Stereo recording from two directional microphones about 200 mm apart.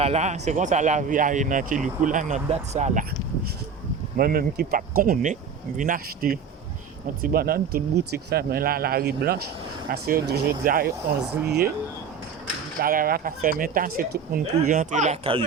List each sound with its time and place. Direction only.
0.0 s speech: 35° right (ahead or behind)
4.2 s speech: 50° right (ahead or behind)
12.8 s speech: 45° right (ahead or behind); by 15.4 s 30° right (ahead or behind)